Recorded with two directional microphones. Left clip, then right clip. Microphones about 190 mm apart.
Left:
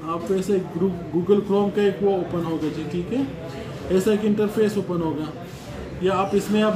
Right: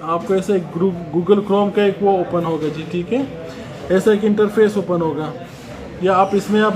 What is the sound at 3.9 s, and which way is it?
Speech, 10° right (ahead or behind).